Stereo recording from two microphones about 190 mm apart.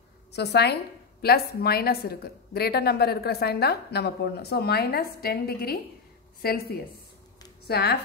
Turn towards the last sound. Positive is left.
turn(degrees=55)  # may be behind; listen again after turning